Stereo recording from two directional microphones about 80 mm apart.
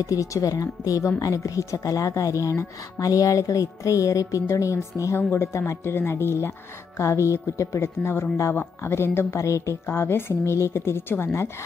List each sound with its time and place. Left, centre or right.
0.0 s a woman's voice: left
5.3 s speech: left